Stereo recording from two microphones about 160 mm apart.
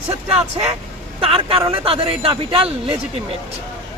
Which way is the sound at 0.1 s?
40° right (ahead or behind).